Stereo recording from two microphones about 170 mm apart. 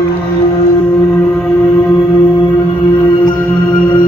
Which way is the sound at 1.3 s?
5° left (ahead or behind).